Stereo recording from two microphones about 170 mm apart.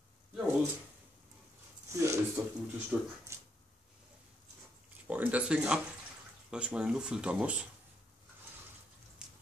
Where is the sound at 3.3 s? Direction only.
15° right (ahead or behind).